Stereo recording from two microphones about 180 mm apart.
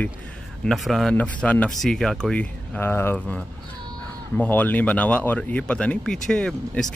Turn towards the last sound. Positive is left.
turn(degrees=5)  # may be behind; listen again after turning